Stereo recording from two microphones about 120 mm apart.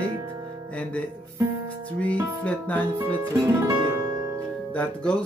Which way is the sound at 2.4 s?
10° left (ahead or behind).